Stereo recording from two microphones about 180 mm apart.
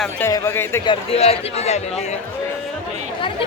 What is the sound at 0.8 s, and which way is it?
A man's voice, 35° left (ahead or behind).